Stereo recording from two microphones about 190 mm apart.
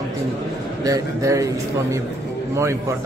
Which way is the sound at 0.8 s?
15° right (ahead or behind).